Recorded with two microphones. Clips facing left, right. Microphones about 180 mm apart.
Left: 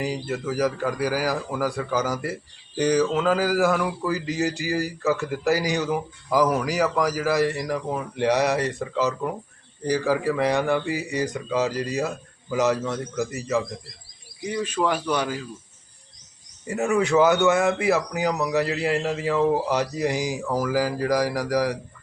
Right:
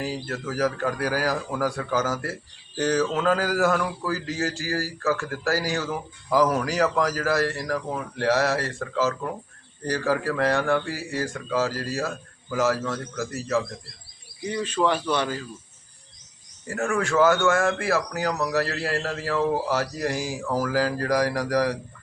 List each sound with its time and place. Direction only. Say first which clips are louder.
0.0 s speech: left 3 dB; 15° left (ahead or behind)
16.6 s speech: left 4 dB; 20° left (ahead or behind)